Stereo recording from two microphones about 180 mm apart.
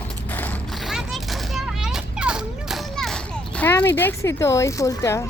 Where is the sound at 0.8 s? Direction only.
Centre (ahead or behind).